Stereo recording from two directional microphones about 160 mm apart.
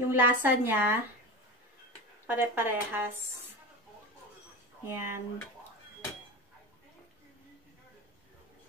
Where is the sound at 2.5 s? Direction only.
15° right (ahead or behind).